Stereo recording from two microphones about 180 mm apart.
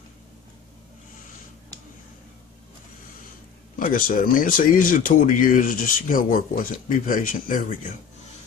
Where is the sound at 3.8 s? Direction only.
50° left (ahead or behind).